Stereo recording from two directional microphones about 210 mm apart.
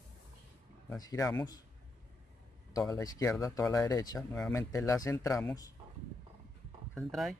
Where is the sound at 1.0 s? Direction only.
15° left (ahead or behind).